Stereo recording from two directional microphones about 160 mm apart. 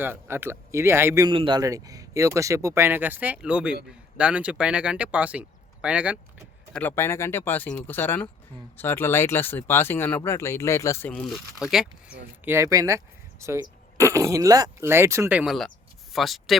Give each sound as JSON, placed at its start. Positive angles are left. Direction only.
{"t": 0.0, "sound": "speech", "side_deg": -15}
{"t": 1.3, "sound": "speech", "side_deg": -30}
{"t": 6.7, "sound": "speech", "side_deg": 15}
{"t": 11.1, "sound": "speech", "side_deg": 5}